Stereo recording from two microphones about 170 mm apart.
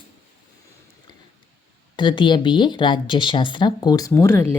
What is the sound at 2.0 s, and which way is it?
A woman's voice, 30° left (ahead or behind).